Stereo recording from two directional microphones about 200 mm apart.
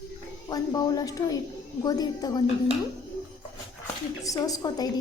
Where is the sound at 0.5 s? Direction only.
20° left (ahead or behind).